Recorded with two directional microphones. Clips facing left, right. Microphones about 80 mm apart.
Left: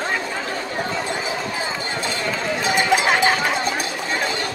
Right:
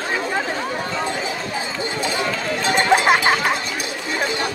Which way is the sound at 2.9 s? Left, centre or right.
Right.